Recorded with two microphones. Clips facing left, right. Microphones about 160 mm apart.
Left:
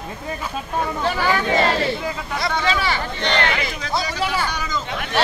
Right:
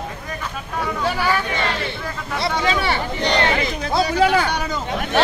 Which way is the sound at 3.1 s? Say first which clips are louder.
Right 3 dB; 15° right (ahead or behind).